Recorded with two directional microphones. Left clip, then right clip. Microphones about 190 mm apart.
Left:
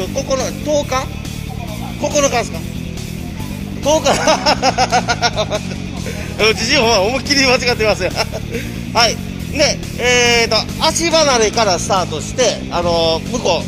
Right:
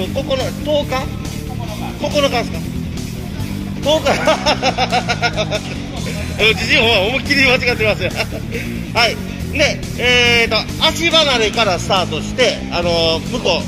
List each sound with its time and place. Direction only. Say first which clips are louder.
0.0 s music: left 1 dB; centre (ahead or behind)
2.0 s speech: left 1 dB; 5° left (ahead or behind)
3.8 s speech: left 1 dB; 15° left (ahead or behind)
9.6 s speech: even; 15° left (ahead or behind)
12.8 s speech: left 1 dB; 15° left (ahead or behind)